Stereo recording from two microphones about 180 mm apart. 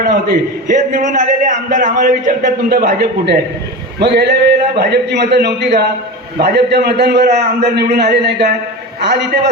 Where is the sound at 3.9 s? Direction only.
70° right (ahead or behind).